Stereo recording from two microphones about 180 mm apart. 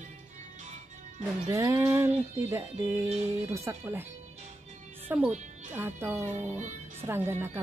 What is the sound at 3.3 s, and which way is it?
Speech, 15° right (ahead or behind).